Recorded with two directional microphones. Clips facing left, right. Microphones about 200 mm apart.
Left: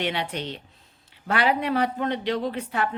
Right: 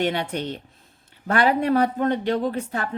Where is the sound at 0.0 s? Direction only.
45° right (ahead or behind).